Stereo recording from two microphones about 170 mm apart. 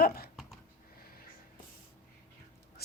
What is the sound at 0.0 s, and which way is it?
Speech, 60° left (ahead or behind).